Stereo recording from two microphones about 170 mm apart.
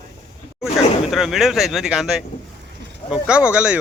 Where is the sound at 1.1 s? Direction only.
Centre (ahead or behind).